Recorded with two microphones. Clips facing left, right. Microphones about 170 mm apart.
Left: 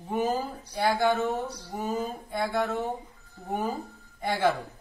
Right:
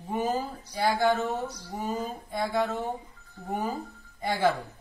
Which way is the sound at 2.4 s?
Centre (ahead or behind).